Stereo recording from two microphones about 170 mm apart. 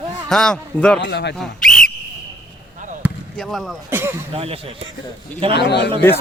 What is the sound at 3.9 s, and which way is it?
Speech, 10° right (ahead or behind).